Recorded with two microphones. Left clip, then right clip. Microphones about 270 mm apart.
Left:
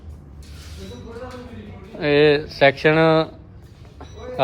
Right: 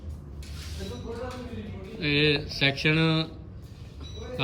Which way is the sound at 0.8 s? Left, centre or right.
Centre.